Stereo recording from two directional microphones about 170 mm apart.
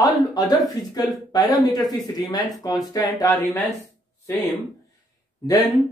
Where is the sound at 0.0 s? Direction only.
20° left (ahead or behind).